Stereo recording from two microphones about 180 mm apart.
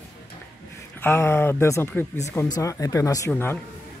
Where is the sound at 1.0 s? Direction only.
15° left (ahead or behind).